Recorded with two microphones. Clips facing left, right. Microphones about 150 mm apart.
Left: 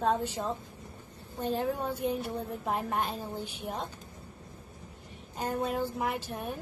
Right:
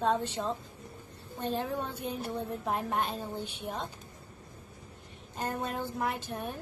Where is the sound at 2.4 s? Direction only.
Centre (ahead or behind).